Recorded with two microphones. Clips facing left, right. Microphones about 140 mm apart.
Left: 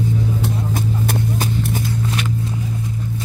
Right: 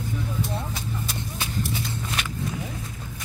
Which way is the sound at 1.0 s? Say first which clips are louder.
Left 11 dB; 45° left (ahead or behind).